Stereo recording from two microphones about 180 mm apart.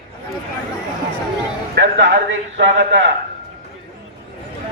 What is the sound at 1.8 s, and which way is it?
Speech, 70° right (ahead or behind).